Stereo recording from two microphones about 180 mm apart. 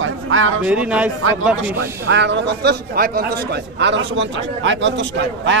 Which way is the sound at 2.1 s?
80° right.